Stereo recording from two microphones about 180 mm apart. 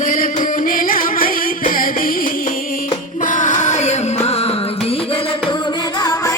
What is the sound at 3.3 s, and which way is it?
Music, 45° left (ahead or behind).